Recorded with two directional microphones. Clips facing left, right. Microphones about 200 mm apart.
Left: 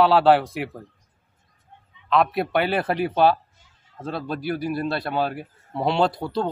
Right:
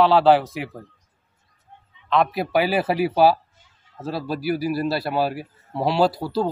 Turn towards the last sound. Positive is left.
turn(degrees=-5)  # may be behind; listen again after turning